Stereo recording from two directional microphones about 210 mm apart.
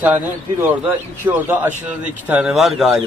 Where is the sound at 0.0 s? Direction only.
10° right (ahead or behind).